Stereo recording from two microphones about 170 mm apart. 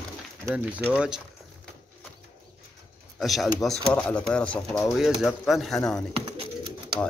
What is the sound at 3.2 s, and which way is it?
A man's voice, centre (ahead or behind).